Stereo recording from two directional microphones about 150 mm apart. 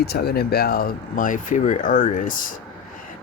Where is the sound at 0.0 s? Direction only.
90° left.